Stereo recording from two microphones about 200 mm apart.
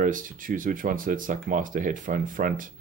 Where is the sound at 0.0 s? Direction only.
40° right (ahead or behind).